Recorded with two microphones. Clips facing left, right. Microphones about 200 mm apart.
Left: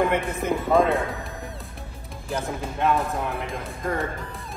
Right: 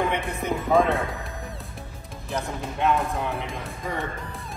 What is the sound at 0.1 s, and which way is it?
Speech, centre (ahead or behind).